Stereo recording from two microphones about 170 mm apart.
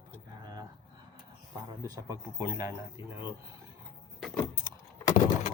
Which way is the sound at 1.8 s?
20° right (ahead or behind).